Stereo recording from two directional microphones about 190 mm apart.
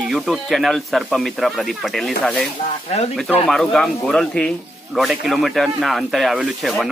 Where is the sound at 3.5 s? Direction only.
5° left (ahead or behind).